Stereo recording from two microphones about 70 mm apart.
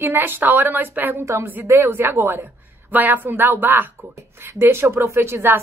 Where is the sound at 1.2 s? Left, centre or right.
Right.